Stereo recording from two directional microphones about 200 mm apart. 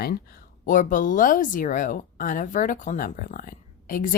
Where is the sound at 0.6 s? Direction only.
40° left (ahead or behind).